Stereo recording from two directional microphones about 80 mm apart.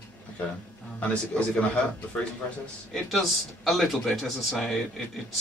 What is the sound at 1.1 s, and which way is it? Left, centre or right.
Speech, centre.